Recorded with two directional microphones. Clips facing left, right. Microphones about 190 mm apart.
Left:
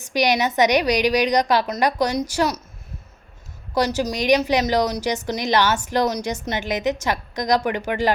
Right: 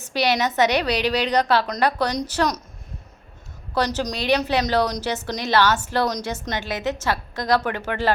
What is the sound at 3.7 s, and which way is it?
A woman's voice, 10° left (ahead or behind).